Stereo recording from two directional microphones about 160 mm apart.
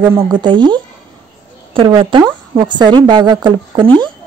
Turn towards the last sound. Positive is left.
turn(degrees=-30)  # may be behind; listen again after turning